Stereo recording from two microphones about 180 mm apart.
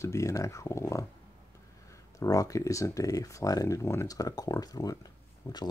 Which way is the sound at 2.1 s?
20° left (ahead or behind).